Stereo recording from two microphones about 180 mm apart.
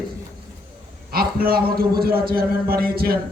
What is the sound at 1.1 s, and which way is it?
A man's voice, 55° right (ahead or behind).